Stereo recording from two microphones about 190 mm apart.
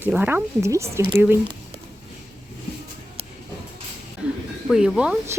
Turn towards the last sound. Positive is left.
turn(degrees=-5)  # may be behind; listen again after turning